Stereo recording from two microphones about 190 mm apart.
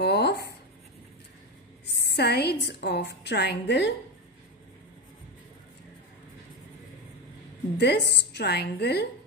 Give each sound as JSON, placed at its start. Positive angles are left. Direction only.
{"t": 0.0, "sound": "writing", "side_deg": 60}
{"t": 2.0, "sound": "a woman's voice", "side_deg": 60}
{"t": 7.7, "sound": "a woman's voice", "side_deg": 60}